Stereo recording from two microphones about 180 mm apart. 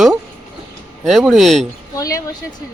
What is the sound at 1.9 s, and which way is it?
Speech, 20° left (ahead or behind).